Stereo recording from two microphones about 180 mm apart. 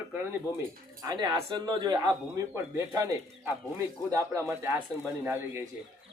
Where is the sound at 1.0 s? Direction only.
20° right (ahead or behind).